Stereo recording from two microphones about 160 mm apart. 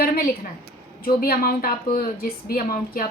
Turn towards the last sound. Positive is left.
turn(degrees=65)  # may be behind; listen again after turning